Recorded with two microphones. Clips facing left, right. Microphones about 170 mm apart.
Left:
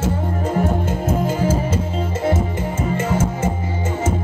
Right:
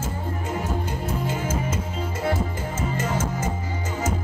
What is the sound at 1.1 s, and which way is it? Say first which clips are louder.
Music: left 9 dB; 40° left (ahead or behind).